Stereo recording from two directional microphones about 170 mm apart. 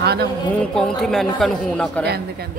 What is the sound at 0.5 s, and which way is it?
Speech, 5° left (ahead or behind).